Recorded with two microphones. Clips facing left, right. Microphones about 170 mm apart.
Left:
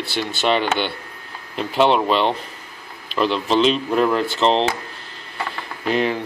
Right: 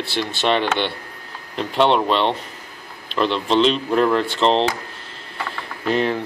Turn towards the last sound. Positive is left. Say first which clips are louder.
# even
turn(degrees=0)  # may be behind; listen again after turning